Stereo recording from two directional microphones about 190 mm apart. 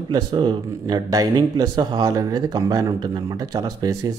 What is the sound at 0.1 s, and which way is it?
A man's voice, 25° right (ahead or behind).